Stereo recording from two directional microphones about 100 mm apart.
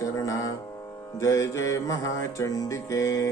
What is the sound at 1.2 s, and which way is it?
Speech, 30° left (ahead or behind).